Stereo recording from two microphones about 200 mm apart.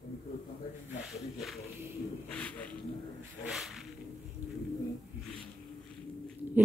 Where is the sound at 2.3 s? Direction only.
5° left (ahead or behind).